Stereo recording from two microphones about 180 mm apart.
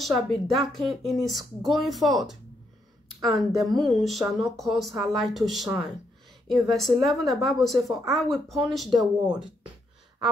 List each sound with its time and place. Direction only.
0.0 s speech: centre (ahead or behind)